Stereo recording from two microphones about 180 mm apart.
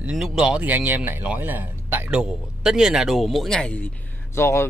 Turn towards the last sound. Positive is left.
turn(degrees=15)  # may be behind; listen again after turning